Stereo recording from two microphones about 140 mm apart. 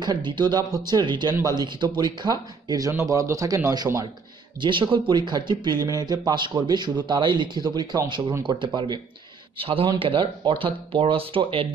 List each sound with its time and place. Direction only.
0.0 s speech: 30° right (ahead or behind)